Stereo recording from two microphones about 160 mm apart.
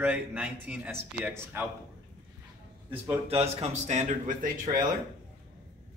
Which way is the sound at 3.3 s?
40° right (ahead or behind).